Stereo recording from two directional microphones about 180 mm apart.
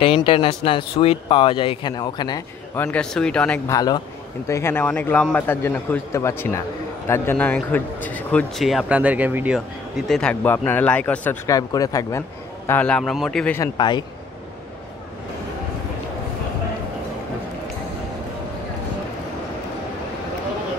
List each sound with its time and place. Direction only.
0.0 s speech: 30° left (ahead or behind); by 3.7 s 5° left (ahead or behind)
3.7 s a man's voice: 20° left (ahead or behind)
12.6 s a man's voice: 10° left (ahead or behind)
13.6 s speech: 25° left (ahead or behind)